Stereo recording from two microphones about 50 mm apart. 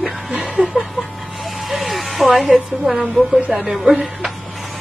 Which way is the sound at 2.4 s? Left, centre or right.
Centre.